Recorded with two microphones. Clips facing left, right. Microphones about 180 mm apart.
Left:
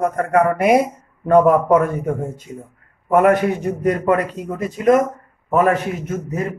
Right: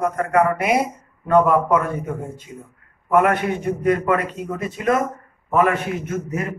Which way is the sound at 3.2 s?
40° left (ahead or behind).